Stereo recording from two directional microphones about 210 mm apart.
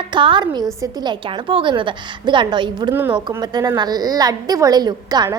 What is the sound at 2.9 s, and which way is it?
A woman's voice, 10° right (ahead or behind).